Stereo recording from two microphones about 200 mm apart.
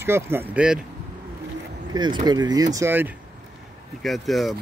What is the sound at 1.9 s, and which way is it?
Speech, 20° right (ahead or behind).